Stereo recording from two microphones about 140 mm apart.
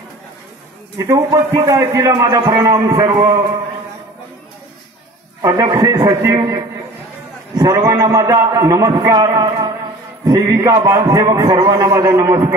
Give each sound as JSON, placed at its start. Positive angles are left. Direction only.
{"t": 0.9, "sound": "a man's voice", "side_deg": -25}
{"t": 5.4, "sound": "a man's voice", "side_deg": -25}